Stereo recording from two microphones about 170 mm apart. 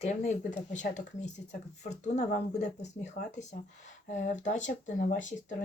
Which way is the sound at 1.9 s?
40° left (ahead or behind).